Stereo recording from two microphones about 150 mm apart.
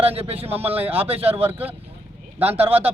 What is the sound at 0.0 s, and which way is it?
Speech, 40° right (ahead or behind).